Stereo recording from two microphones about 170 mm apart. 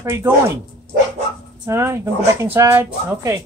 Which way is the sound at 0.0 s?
15° right (ahead or behind).